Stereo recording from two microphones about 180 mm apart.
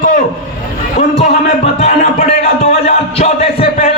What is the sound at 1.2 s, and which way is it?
Music, 35° left (ahead or behind).